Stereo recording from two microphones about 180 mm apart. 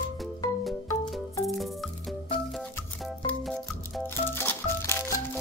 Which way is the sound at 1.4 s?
Centre (ahead or behind).